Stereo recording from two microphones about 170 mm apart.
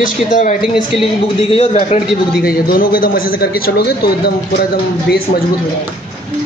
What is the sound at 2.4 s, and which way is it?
A man's voice, 60° left (ahead or behind).